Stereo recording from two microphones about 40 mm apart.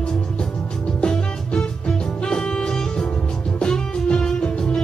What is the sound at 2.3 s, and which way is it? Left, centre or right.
Music, left.